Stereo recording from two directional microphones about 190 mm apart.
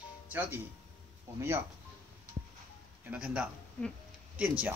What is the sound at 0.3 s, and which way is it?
Speech, 10° right (ahead or behind).